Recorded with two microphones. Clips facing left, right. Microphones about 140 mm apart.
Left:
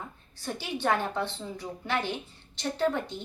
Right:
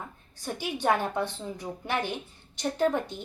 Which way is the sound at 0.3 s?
15° right (ahead or behind).